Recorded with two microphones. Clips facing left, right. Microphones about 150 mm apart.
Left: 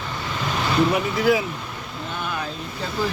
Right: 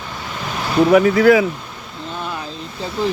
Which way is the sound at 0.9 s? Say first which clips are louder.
Right 9 dB; 85° right.